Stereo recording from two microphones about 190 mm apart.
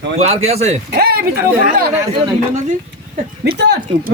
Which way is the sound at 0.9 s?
55° right (ahead or behind).